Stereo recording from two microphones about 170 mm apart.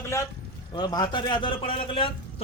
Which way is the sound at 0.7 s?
25° left (ahead or behind).